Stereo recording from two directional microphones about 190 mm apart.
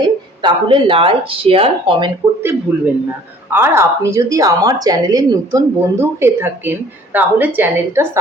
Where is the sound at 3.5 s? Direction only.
10° right (ahead or behind).